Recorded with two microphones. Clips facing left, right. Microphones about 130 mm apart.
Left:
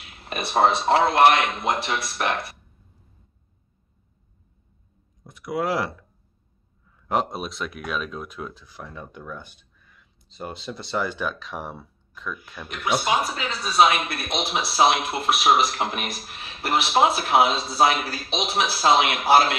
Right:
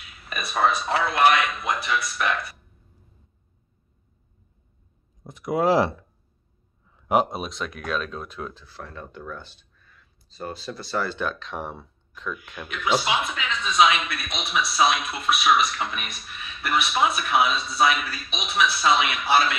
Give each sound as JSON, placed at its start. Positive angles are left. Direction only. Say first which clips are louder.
{"t": 0.4, "sound": "speech", "louder": "left 3 dB", "side_deg": 30}
{"t": 5.2, "sound": "speech", "louder": "right 4 dB", "side_deg": -25}
{"t": 7.1, "sound": "speech", "louder": "right 3 dB", "side_deg": -5}
{"t": 12.8, "sound": "speech", "louder": "left 1 dB", "side_deg": 55}